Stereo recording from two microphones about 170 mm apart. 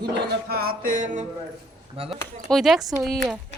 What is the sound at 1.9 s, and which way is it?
Speech, 35° right (ahead or behind).